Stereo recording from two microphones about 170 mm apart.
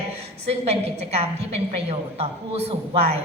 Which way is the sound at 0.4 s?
40° right (ahead or behind).